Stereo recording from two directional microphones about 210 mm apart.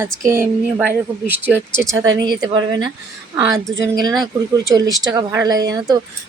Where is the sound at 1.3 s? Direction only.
10° right (ahead or behind).